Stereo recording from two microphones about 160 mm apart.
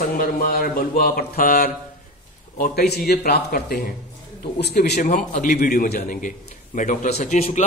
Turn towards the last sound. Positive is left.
turn(degrees=45)  # may be behind; listen again after turning